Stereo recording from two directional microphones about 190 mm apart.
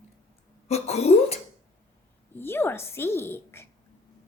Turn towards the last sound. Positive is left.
turn(degrees=15)  # may be behind; listen again after turning